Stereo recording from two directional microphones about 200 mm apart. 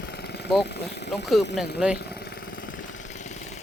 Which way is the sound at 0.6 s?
55° left (ahead or behind).